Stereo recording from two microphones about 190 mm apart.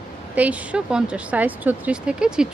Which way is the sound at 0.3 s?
5° right (ahead or behind).